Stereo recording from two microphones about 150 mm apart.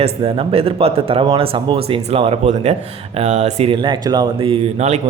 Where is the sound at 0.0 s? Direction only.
40° right (ahead or behind).